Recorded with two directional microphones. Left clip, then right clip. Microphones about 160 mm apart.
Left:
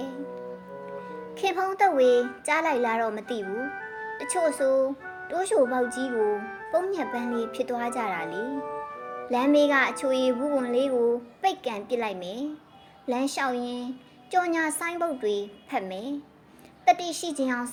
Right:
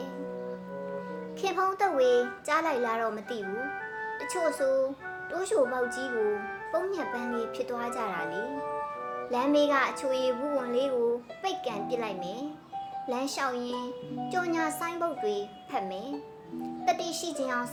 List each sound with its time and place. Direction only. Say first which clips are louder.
1.4 s a child's voice: left 4 dB; 30° left (ahead or behind)
3.4 s speech: left 2 dB; centre (ahead or behind)
4.2 s a child's voice: left 4 dB; 30° left (ahead or behind)
6.1 s speech: left 3 dB; centre (ahead or behind)
6.7 s a child's voice: left 5 dB; 30° left (ahead or behind)
8.4 s music: left 1 dB; centre (ahead or behind)
9.3 s a child's voice: left 4 dB; 30° left (ahead or behind)